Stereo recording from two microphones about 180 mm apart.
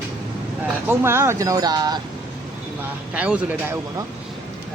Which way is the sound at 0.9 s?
15° right (ahead or behind).